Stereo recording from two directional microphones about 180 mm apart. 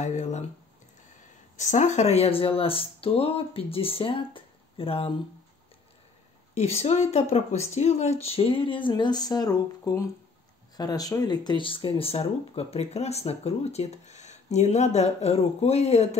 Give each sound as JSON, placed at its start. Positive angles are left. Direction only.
{"t": 0.0, "sound": "speech", "side_deg": 40}
{"t": 1.6, "sound": "speech", "side_deg": 40}
{"t": 6.5, "sound": "speech", "side_deg": 40}